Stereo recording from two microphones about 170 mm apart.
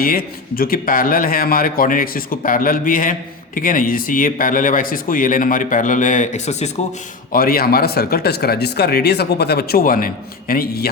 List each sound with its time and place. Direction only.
0.0 s a man's voice: 60° left (ahead or behind); by 6.7 s 40° left (ahead or behind)
7.3 s a man's voice: 60° left (ahead or behind)